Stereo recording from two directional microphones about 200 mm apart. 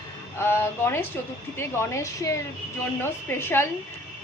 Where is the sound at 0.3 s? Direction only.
10° left (ahead or behind).